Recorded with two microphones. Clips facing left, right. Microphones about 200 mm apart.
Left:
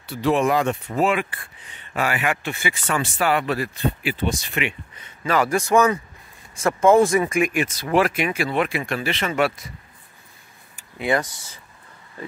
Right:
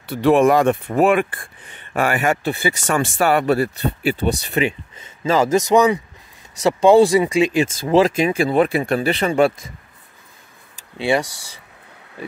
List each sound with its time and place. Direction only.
0.1 s speech: 55° right (ahead or behind); by 4.7 s 35° right (ahead or behind)
5.2 s a man's voice: 25° right (ahead or behind)
7.5 s speech: 25° right (ahead or behind)
11.2 s speech: 70° right (ahead or behind)